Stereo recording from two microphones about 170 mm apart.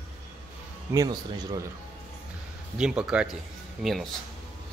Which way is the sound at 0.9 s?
20° right (ahead or behind).